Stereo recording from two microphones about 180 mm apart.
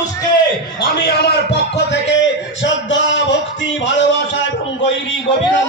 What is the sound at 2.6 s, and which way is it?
Speech, 90° left.